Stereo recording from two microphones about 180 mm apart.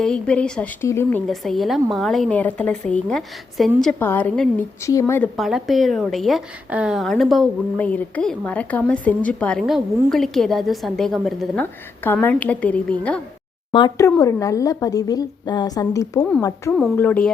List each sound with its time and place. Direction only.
0.0 s a woman's voice: 5° left (ahead or behind)
1.3 s a woman's voice: centre (ahead or behind)
5.4 s a woman's voice: centre (ahead or behind)
11.6 s a woman's voice: 10° left (ahead or behind)
13.7 s a woman's voice: 20° left (ahead or behind)